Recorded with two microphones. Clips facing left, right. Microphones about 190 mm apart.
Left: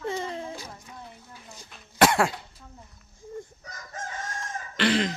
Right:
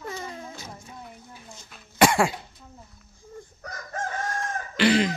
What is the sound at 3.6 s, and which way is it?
Chicken, 60° right (ahead or behind).